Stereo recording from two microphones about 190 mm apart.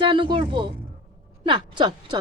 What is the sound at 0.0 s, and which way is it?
A woman's voice, 25° right (ahead or behind).